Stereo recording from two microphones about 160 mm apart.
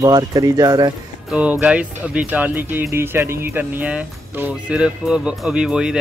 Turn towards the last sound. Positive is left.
turn(degrees=-5)  # may be behind; listen again after turning